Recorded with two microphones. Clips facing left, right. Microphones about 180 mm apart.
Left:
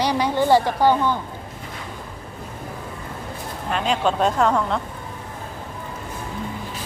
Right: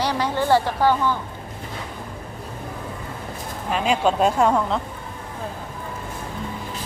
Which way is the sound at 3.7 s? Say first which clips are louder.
Right 1 dB; 10° right (ahead or behind).